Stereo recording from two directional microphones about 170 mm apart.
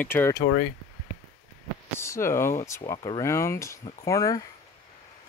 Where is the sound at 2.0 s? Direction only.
15° left (ahead or behind).